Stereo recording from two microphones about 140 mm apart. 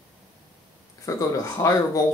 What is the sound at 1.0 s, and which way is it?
Speech, 20° left (ahead or behind).